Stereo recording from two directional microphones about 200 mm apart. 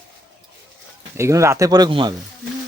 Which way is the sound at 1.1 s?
15° right (ahead or behind).